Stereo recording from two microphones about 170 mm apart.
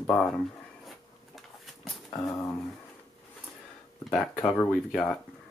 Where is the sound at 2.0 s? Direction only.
20° left (ahead or behind).